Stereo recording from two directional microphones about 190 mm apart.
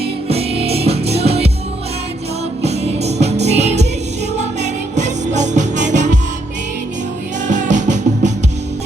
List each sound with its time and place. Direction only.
0.0 s music: 30° right (ahead or behind)
2.6 s music: 35° right (ahead or behind)
7.4 s music: 40° right (ahead or behind)